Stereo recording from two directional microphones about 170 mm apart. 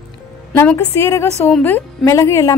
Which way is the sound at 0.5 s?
15° left (ahead or behind).